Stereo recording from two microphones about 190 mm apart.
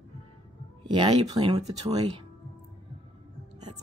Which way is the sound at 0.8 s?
20° right (ahead or behind).